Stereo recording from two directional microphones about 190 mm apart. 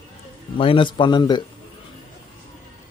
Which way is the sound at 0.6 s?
25° left (ahead or behind).